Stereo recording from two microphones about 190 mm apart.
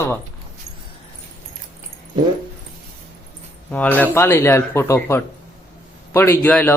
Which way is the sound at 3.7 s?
10° left (ahead or behind).